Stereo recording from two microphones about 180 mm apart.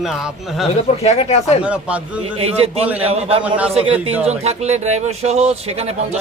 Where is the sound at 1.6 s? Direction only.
5° right (ahead or behind).